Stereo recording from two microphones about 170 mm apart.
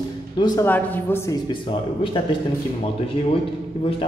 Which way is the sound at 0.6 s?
10° left (ahead or behind).